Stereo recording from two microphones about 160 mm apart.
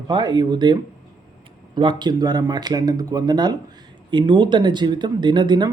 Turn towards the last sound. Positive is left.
turn(degrees=-30)  # may be behind; listen again after turning